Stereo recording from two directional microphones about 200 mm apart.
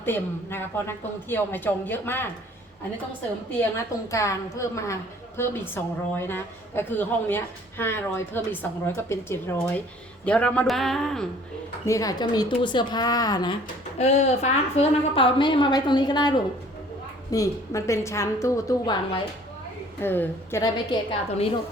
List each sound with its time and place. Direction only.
0.0 s a woman's voice: 10° left (ahead or behind)
4.1 s a woman's voice: 15° left (ahead or behind)
11.9 s a woman's voice: 15° left (ahead or behind)
14.0 s a woman's voice: 35° left (ahead or behind)